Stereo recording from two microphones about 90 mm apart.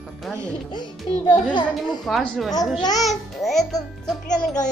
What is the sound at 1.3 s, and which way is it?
Speech, 55° left (ahead or behind).